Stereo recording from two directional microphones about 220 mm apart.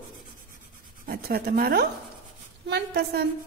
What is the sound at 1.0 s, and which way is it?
A woman's voice, 45° right (ahead or behind).